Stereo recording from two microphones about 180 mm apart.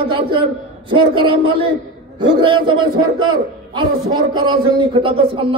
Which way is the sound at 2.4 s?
25° right (ahead or behind).